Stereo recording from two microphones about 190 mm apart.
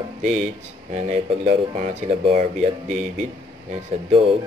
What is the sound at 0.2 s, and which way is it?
Speech, 40° right (ahead or behind).